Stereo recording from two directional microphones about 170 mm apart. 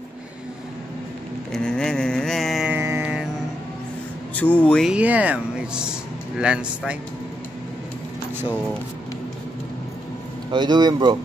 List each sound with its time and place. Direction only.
1.5 s a sound: 5° left (ahead or behind)
2.8 s mantra: 15° right (ahead or behind)
4.6 s speech: 10° left (ahead or behind)
4.8 s speech: 5° right (ahead or behind)
10.5 s a man's voice: 25° right (ahead or behind)